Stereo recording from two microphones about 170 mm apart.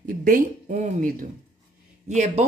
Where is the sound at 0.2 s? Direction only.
50° right (ahead or behind).